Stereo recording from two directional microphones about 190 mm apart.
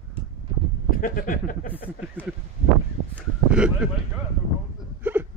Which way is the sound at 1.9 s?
10° right (ahead or behind).